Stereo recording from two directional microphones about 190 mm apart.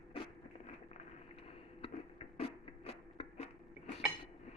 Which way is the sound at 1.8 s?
30° left (ahead or behind).